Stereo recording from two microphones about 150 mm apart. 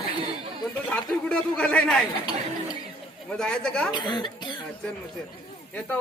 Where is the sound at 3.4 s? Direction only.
5° left (ahead or behind).